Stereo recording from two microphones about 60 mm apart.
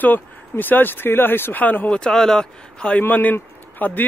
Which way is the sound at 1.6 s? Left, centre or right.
Left.